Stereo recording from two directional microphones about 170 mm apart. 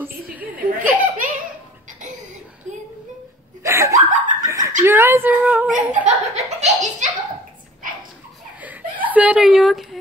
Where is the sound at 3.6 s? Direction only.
15° right (ahead or behind).